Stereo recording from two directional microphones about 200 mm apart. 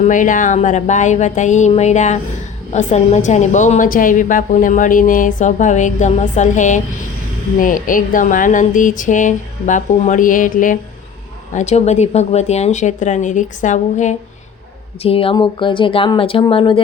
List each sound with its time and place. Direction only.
0.1 s a woman's voice: 40° left (ahead or behind)